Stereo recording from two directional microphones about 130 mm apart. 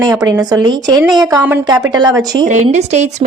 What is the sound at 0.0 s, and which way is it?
Speech, 30° right (ahead or behind).